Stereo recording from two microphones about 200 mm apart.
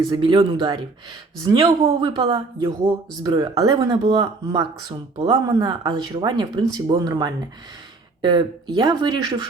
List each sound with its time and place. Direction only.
0.1 s speech: 25° right (ahead or behind)